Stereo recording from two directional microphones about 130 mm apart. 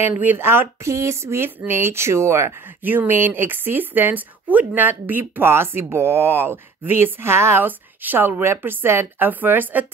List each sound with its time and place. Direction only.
0.0 s speech: 15° right (ahead or behind)